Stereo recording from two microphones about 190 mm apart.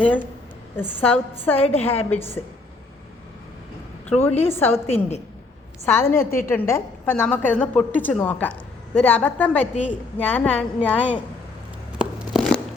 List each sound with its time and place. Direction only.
0.9 s a woman's voice: 10° left (ahead or behind)
1.5 s a woman's voice: 30° left (ahead or behind)
1.8 s a woman's voice: 10° left (ahead or behind)
4.1 s a woman's voice: 10° left (ahead or behind)
11.9 s tearing: centre (ahead or behind)